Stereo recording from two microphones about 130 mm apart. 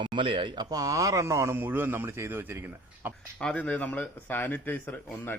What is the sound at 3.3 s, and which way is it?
Speech, 10° left (ahead or behind).